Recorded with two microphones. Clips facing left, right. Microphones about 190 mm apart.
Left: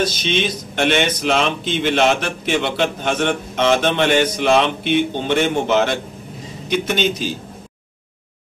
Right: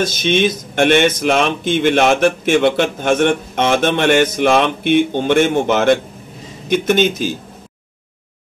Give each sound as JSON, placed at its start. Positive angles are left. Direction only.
{"t": 0.0, "sound": "speech", "side_deg": -50}